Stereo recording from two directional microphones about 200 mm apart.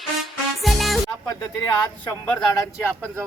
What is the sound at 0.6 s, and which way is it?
Music, centre (ahead or behind).